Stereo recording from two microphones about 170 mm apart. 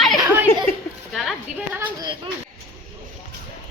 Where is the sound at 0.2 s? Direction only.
15° right (ahead or behind).